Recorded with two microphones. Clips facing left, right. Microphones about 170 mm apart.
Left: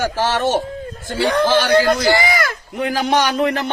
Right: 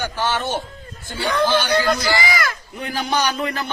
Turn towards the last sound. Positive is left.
turn(degrees=90)